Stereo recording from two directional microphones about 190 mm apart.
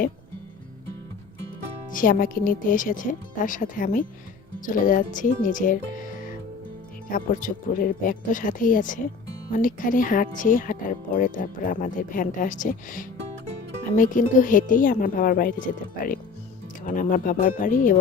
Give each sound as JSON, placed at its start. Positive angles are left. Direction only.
{"t": 1.9, "sound": "speech", "side_deg": 45}
{"t": 7.1, "sound": "speech", "side_deg": 45}